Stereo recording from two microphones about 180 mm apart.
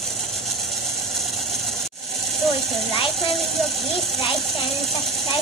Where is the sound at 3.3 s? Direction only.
Centre (ahead or behind).